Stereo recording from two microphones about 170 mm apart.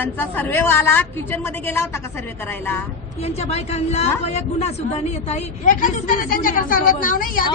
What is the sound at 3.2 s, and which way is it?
A woman's voice, 40° left (ahead or behind).